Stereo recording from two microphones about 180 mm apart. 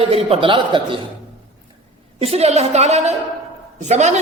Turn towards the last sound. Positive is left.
turn(degrees=-40)  # may be behind; listen again after turning